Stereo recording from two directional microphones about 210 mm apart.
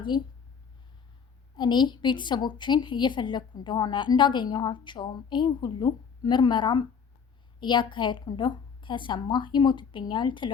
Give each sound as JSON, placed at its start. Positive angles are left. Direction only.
{"t": 0.1, "sound": "a woman's voice", "side_deg": 20}
{"t": 1.5, "sound": "a woman's voice", "side_deg": 20}